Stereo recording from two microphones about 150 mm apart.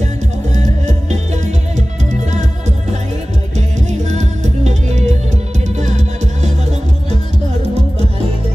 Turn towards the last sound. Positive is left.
turn(degrees=-50)  # may be behind; listen again after turning